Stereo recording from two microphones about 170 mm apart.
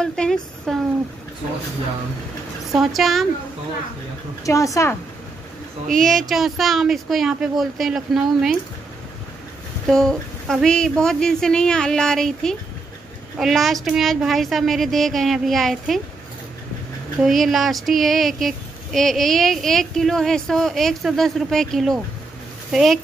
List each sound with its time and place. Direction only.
0.0 s speech: 5° left (ahead or behind)
2.7 s speech: centre (ahead or behind)
4.5 s speech: 20° left (ahead or behind)
5.9 s speech: centre (ahead or behind)
9.8 s speech: centre (ahead or behind)
17.2 s speech: centre (ahead or behind)